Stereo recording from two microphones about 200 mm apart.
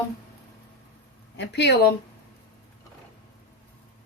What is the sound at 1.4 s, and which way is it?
Speech, 60° left (ahead or behind).